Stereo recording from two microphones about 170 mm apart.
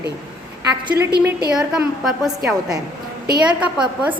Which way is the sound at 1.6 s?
Centre (ahead or behind).